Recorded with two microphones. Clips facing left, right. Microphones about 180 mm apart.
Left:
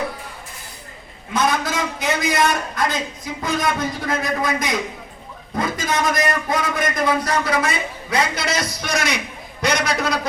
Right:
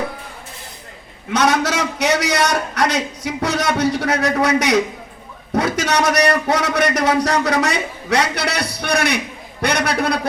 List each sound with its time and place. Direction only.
1.3 s a man's voice: 80° right; by 10.2 s 60° right (ahead or behind)